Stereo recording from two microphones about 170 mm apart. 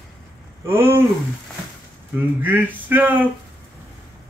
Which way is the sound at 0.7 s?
15° right (ahead or behind).